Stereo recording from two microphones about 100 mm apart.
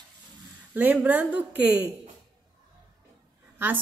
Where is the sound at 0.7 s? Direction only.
20° right (ahead or behind).